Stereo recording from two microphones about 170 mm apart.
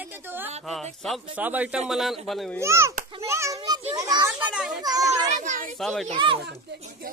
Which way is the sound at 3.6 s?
30° right (ahead or behind).